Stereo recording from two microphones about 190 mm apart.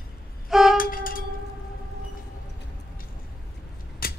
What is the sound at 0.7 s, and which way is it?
Wind instrument, 50° left (ahead or behind).